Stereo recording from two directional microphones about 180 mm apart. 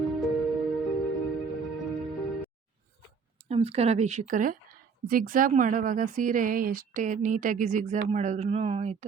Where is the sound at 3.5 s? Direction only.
35° right (ahead or behind).